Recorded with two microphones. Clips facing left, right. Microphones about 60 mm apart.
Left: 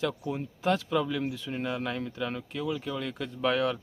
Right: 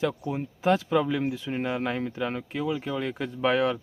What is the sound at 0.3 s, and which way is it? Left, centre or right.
Speech, centre.